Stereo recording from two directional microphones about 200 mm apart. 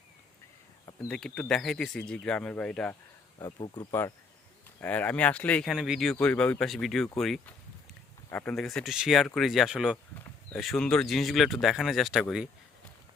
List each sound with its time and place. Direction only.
1.0 s speech: 5° left (ahead or behind)
3.3 s speech: 20° left (ahead or behind)
4.8 s speech: 5° left (ahead or behind)